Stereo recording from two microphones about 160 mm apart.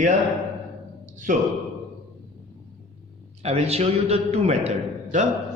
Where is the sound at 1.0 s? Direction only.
50° right (ahead or behind).